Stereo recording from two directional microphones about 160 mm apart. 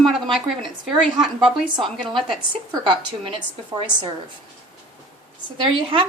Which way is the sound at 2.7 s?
30° right (ahead or behind).